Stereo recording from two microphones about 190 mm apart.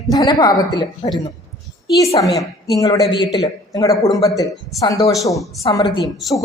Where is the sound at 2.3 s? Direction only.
20° left (ahead or behind).